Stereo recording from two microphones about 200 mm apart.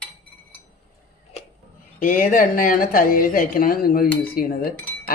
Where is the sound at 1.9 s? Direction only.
45° left (ahead or behind).